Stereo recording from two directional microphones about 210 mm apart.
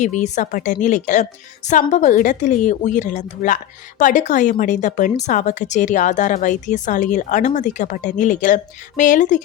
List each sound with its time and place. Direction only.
0.0 s a woman's voice: 35° left (ahead or behind)